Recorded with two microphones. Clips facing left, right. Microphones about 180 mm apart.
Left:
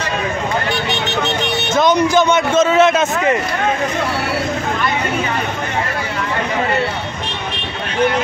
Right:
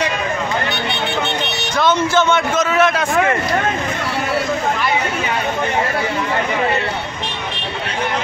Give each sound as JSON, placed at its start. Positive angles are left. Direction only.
{"t": 1.8, "sound": "speech", "side_deg": 15}
{"t": 2.5, "sound": "a man's voice", "side_deg": 25}